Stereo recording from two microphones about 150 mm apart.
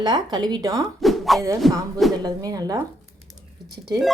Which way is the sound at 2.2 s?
25° right (ahead or behind).